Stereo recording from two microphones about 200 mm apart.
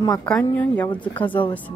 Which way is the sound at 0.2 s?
5° left (ahead or behind).